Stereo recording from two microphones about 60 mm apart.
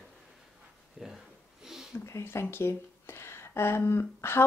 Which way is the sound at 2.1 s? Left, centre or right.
Left.